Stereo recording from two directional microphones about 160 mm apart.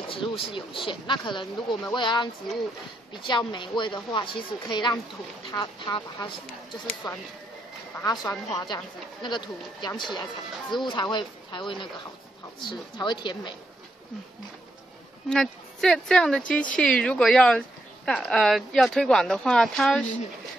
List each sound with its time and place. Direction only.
0.1 s speech: 30° left (ahead or behind)
8.0 s speech: 25° left (ahead or behind)
15.2 s speech: 5° left (ahead or behind)